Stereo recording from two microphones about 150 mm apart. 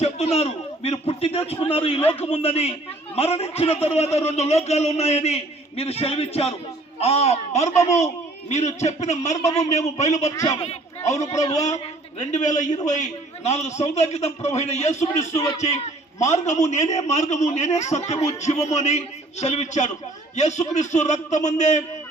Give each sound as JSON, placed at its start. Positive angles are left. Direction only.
{"t": 0.0, "sound": "a man's voice", "side_deg": 40}